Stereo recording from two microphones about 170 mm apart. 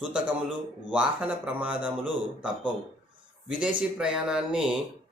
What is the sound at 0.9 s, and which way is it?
A man's voice, 5° right (ahead or behind).